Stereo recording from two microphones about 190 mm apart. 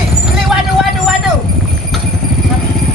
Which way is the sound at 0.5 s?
Centre (ahead or behind).